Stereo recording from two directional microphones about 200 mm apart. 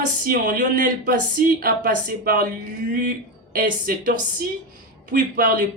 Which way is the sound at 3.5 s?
45° right (ahead or behind).